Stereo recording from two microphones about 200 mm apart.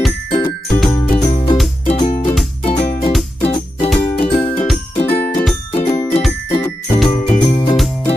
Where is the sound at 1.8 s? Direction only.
35° left (ahead or behind).